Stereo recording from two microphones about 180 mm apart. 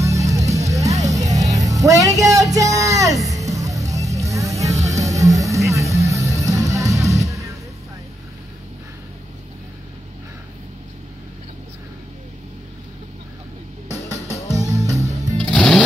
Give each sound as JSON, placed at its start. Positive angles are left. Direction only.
{"t": 0.0, "sound": "music", "side_deg": -15}
{"t": 4.7, "sound": "music", "side_deg": -40}
{"t": 5.0, "sound": "music", "side_deg": -20}
{"t": 14.7, "sound": "music", "side_deg": -20}
{"t": 15.4, "sound": "music", "side_deg": 5}